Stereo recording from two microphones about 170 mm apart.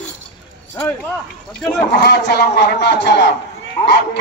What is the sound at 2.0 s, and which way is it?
A man's voice, 75° left (ahead or behind).